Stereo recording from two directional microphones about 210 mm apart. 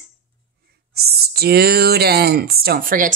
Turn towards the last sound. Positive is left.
turn(degrees=-40)  # may be behind; listen again after turning